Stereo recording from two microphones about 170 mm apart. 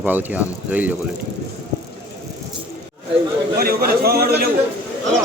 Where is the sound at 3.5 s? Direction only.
65° right (ahead or behind).